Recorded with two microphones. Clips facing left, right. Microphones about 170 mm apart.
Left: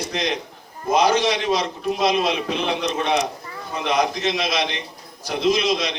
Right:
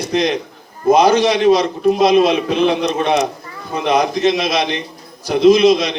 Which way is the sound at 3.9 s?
55° right (ahead or behind).